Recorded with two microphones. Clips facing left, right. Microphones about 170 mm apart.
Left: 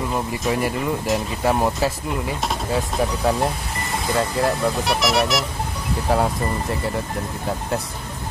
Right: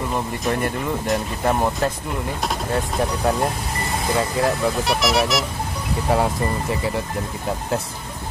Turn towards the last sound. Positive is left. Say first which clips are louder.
# right 1 dB
turn(degrees=0)  # may be behind; listen again after turning